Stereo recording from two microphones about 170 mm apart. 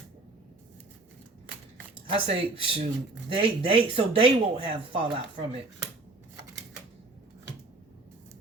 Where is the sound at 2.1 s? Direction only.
35° right (ahead or behind).